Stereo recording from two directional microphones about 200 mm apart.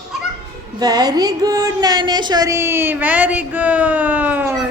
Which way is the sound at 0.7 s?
20° right (ahead or behind).